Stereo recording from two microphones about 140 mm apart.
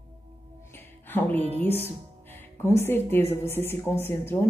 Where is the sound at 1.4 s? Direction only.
50° right (ahead or behind).